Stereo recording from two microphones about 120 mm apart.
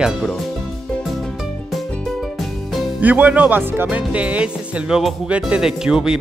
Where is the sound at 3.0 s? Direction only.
10° right (ahead or behind).